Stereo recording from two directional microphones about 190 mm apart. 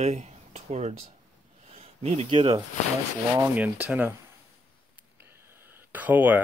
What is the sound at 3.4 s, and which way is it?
Speech, 10° right (ahead or behind).